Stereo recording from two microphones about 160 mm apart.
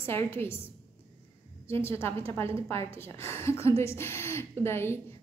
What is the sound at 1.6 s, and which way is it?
A woman's voice, 15° left (ahead or behind).